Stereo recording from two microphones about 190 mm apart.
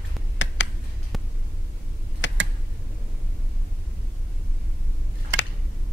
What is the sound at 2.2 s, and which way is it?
Computer keyboard, 75° left (ahead or behind).